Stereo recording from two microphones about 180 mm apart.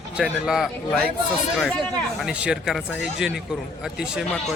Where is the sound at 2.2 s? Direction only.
5° right (ahead or behind).